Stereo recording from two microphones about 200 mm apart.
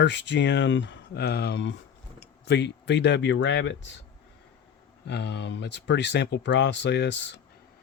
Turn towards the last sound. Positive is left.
turn(degrees=60)  # may be behind; listen again after turning